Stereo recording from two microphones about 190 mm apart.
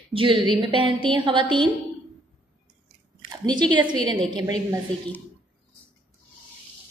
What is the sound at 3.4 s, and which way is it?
Speech, 25° right (ahead or behind).